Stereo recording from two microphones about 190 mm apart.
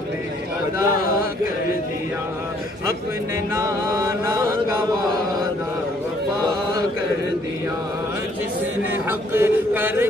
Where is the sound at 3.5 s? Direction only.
20° right (ahead or behind).